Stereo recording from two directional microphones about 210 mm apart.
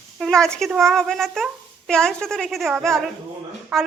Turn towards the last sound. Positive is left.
turn(degrees=0)  # may be behind; listen again after turning